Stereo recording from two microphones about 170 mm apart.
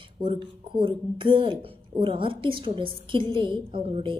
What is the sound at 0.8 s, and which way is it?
A woman's voice, 30° right (ahead or behind).